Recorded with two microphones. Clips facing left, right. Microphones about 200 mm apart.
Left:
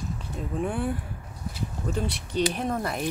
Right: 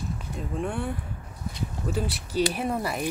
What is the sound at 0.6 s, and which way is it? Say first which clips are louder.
Speech: left 3 dB; centre (ahead or behind).